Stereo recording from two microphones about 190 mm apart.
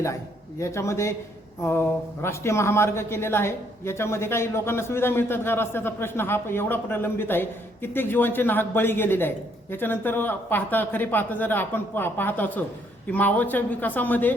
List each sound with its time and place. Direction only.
0.6 s speech: 15° left (ahead or behind)
2.2 s speech: 15° left (ahead or behind)